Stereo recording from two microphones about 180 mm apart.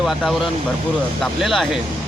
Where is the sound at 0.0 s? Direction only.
Centre (ahead or behind).